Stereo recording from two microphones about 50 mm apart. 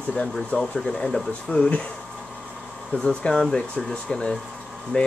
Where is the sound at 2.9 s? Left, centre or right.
Centre.